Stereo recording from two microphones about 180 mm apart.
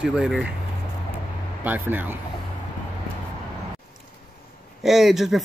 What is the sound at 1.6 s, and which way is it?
Speech, 10° right (ahead or behind).